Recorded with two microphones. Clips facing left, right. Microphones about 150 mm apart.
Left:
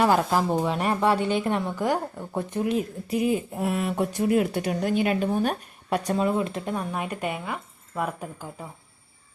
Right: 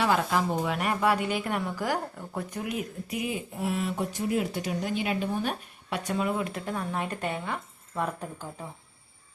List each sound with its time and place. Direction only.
0.0 s a woman's voice: 35° left (ahead or behind)
6.1 s speech: 30° left (ahead or behind); by 8.4 s 10° left (ahead or behind)